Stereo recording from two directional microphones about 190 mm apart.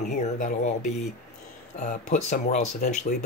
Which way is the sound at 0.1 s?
45° left (ahead or behind).